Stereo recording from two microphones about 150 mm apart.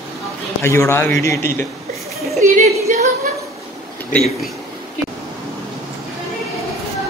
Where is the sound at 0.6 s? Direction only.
15° left (ahead or behind).